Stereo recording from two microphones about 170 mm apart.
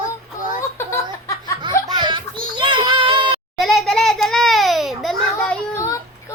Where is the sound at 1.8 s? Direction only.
25° right (ahead or behind).